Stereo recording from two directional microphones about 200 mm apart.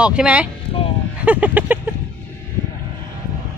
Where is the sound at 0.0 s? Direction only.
5° right (ahead or behind).